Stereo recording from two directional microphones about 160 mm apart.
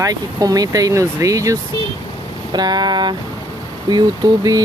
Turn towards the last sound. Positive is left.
turn(degrees=-25)  # may be behind; listen again after turning